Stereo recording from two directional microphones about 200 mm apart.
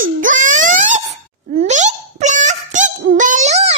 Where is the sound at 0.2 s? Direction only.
40° right (ahead or behind).